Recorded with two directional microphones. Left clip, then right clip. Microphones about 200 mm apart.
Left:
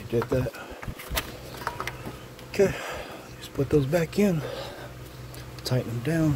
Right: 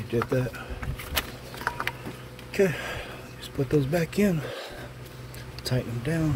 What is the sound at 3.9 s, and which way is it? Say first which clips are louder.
Speech: left 1 dB; centre (ahead or behind).